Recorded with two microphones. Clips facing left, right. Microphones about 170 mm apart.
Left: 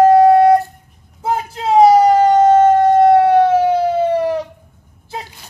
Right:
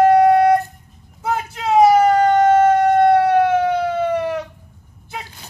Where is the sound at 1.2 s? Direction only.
30° left (ahead or behind).